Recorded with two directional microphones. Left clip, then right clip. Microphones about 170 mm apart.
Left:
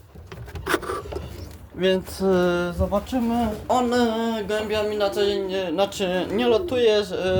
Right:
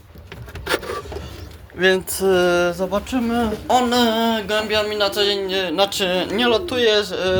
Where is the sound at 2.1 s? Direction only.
5° left (ahead or behind).